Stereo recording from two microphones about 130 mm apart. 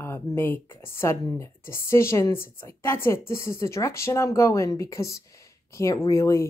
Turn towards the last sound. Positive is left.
turn(degrees=20)  # may be behind; listen again after turning